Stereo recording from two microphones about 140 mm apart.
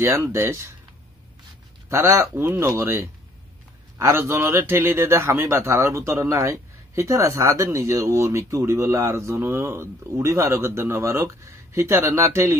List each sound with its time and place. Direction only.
0.0 s a man's voice: 20° right (ahead or behind)
1.9 s a man's voice: 20° right (ahead or behind)